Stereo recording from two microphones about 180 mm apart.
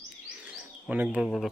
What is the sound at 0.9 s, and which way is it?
Speech, 5° right (ahead or behind).